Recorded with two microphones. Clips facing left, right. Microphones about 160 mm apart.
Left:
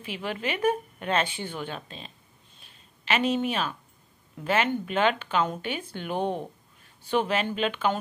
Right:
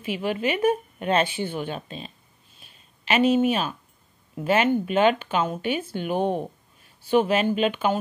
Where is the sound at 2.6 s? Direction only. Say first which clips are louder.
Right 2 dB; 10° right (ahead or behind).